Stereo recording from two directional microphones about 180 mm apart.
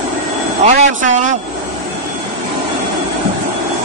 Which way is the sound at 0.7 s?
40° right (ahead or behind).